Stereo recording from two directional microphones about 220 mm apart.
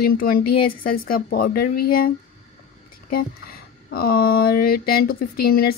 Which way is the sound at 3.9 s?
45° left (ahead or behind).